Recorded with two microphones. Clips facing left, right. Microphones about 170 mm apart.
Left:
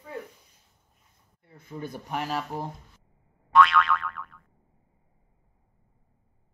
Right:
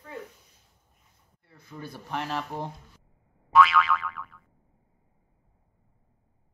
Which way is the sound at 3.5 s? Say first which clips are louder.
Even; centre (ahead or behind).